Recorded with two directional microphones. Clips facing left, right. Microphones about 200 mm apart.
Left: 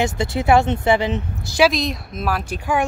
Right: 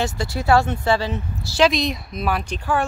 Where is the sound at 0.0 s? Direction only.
20° left (ahead or behind).